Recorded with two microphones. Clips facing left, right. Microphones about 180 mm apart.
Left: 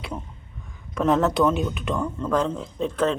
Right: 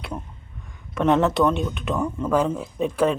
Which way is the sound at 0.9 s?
Centre (ahead or behind).